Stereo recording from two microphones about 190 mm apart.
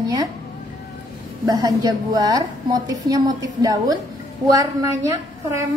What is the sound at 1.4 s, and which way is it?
A woman's voice, 20° right (ahead or behind).